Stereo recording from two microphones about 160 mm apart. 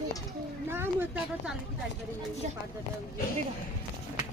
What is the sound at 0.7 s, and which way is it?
Speech, 15° right (ahead or behind).